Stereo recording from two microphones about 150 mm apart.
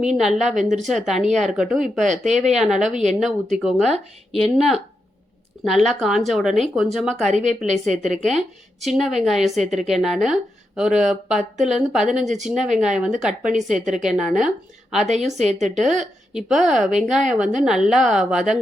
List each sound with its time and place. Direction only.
0.0 s a woman's voice: 5° right (ahead or behind)
7.3 s speech: 50° right (ahead or behind)
8.2 s a woman's voice: centre (ahead or behind)
9.6 s speech: 50° right (ahead or behind)
9.9 s a woman's voice: centre (ahead or behind)
12.2 s speech: 50° right (ahead or behind)
12.8 s a woman's voice: centre (ahead or behind)
13.5 s a woman's voice: 55° right (ahead or behind)
13.9 s a woman's voice: 5° right (ahead or behind)
15.4 s speech: 50° right (ahead or behind)
16.3 s a woman's voice: centre (ahead or behind)